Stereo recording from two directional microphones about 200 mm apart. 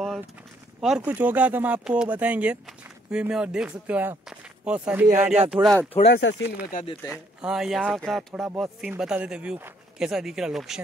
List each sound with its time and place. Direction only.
0.7 s speech: 5° right (ahead or behind)
5.5 s speech: centre (ahead or behind)
6.0 s speech: 60° left (ahead or behind)
6.7 s speech: 45° left (ahead or behind)
7.1 s speech: 5° right (ahead or behind)